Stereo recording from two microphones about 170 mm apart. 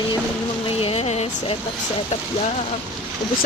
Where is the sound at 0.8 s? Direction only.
35° left (ahead or behind).